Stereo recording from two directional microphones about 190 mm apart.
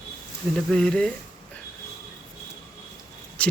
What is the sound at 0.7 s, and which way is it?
Speech, 5° left (ahead or behind).